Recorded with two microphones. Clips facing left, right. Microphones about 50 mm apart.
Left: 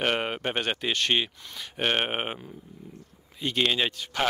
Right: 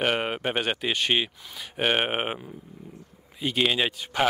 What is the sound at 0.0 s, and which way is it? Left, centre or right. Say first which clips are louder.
Speech: right 1 dB; centre.